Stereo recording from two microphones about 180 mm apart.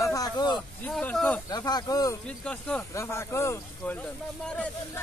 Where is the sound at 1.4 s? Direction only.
20° left (ahead or behind).